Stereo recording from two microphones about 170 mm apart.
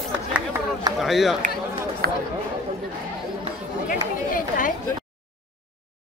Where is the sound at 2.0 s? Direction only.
65° right (ahead or behind).